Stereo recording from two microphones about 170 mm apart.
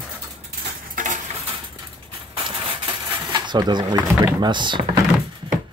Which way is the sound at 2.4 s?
30° right (ahead or behind).